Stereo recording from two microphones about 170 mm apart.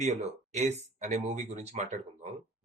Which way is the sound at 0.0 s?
40° right (ahead or behind).